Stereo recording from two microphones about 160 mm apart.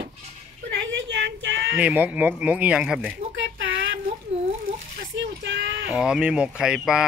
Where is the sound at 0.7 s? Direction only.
90° right.